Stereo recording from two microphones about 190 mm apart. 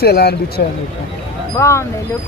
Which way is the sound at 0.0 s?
55° left (ahead or behind).